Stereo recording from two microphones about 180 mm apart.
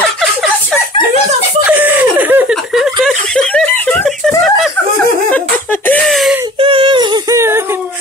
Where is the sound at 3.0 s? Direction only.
Centre (ahead or behind).